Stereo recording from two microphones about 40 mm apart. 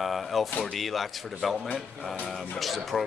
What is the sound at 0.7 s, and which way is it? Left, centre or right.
Speech, centre.